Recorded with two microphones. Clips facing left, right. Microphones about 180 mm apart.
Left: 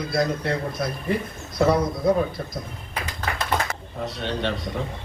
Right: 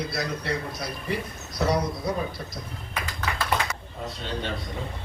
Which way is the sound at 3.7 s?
70° left (ahead or behind).